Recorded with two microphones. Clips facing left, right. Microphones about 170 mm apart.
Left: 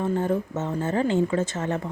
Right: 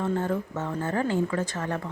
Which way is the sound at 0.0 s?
15° left (ahead or behind).